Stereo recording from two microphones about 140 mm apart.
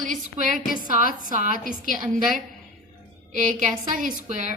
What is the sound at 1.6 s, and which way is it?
A woman's voice, 70° right (ahead or behind).